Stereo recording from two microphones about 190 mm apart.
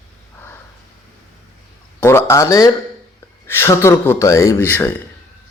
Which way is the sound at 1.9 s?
15° left (ahead or behind).